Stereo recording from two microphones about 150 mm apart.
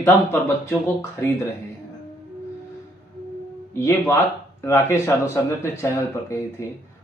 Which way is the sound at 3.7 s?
15° left (ahead or behind).